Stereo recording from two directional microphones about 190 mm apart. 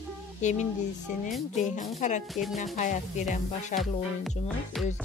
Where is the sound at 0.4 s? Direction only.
40° left (ahead or behind).